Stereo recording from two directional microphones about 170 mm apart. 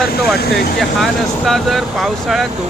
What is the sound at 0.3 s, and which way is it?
Speech, 70° left (ahead or behind).